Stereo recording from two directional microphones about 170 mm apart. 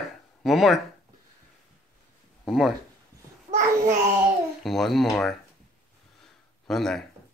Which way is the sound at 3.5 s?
15° right (ahead or behind).